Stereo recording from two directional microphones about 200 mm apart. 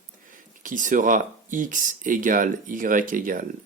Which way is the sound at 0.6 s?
40° right (ahead or behind).